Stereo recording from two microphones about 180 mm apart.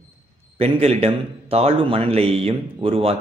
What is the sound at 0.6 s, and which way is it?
A man's voice, 35° right (ahead or behind).